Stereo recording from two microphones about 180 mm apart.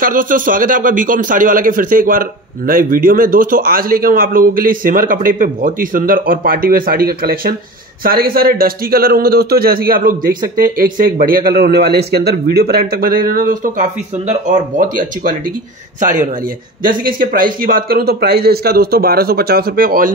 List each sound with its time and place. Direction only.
0.0 s speech: 50° right (ahead or behind)
16.8 s speech: 50° right (ahead or behind)